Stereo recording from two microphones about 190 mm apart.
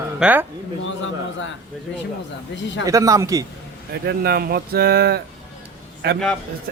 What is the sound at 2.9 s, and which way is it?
Speech, 15° right (ahead or behind).